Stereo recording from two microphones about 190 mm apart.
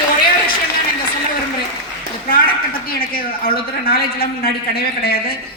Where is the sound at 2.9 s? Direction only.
50° left (ahead or behind).